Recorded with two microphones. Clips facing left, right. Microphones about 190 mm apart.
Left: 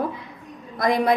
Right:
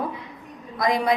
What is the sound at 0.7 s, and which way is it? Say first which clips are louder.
Speech: left 2 dB; 55° left (ahead or behind).